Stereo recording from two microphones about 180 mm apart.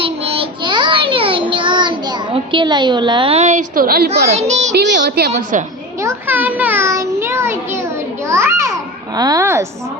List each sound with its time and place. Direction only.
0.0 s child singing: 30° right (ahead or behind); by 4.3 s 60° right (ahead or behind)
4.3 s child singing: 40° right (ahead or behind)
4.7 s a child's voice: 70° right (ahead or behind)
5.3 s a woman's voice: 45° right (ahead or behind)
6.0 s a child's voice: 15° right (ahead or behind)
8.3 s a sound: 15° right (ahead or behind)
9.1 s speech: 20° right (ahead or behind)